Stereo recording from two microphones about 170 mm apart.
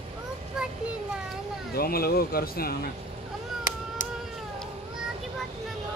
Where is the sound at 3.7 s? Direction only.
50° left (ahead or behind).